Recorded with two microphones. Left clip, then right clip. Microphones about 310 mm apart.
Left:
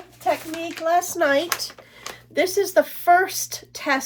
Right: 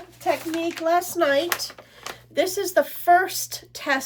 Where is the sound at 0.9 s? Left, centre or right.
Centre.